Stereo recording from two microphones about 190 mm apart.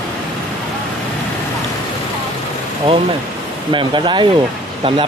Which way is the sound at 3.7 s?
25° right (ahead or behind).